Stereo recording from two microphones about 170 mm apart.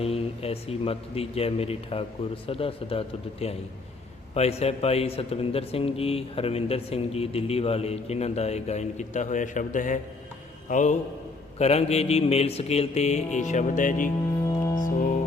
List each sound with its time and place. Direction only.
0.0 s a man's voice: 35° left (ahead or behind)
14.4 s music: 20° left (ahead or behind)